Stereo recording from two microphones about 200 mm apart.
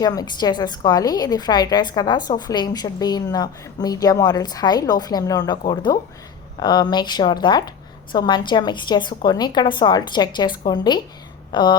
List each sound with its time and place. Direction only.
0.0 s a woman's voice: 20° left (ahead or behind)